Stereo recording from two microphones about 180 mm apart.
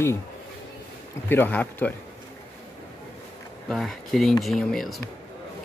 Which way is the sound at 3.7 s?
Centre (ahead or behind).